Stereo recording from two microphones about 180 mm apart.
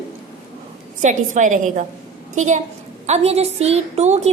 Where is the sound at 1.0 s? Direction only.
45° right (ahead or behind).